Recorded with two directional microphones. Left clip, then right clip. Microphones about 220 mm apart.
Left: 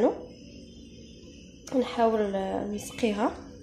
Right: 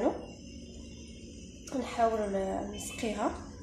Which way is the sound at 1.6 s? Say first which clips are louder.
Left 5 dB; 45° left (ahead or behind).